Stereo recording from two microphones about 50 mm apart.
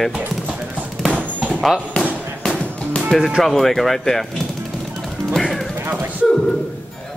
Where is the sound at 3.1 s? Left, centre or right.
Centre.